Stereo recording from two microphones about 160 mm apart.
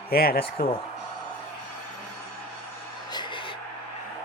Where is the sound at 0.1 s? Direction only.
70° left (ahead or behind).